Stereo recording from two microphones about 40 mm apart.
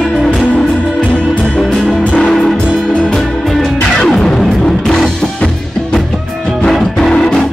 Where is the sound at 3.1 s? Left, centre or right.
Centre.